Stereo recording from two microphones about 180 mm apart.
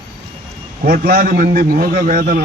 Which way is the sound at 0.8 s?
55° right (ahead or behind).